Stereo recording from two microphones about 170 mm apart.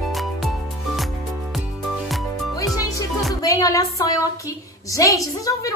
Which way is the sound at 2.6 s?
20° left (ahead or behind).